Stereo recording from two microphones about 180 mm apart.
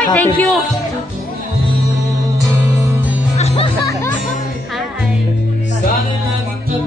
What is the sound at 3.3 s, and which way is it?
Music, 35° left (ahead or behind).